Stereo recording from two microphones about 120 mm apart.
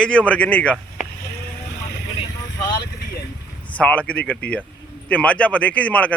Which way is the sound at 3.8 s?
10° left (ahead or behind).